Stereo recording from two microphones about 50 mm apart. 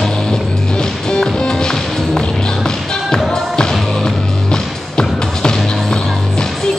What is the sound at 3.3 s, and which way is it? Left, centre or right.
Music, centre.